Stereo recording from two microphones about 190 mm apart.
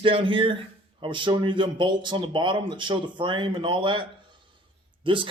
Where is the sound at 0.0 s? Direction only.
25° right (ahead or behind).